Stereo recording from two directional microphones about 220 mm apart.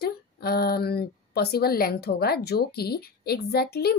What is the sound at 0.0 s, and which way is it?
A woman's voice, 45° left (ahead or behind).